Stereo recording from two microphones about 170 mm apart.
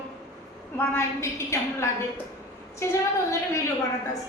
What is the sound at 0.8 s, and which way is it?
A woman's voice, 15° left (ahead or behind).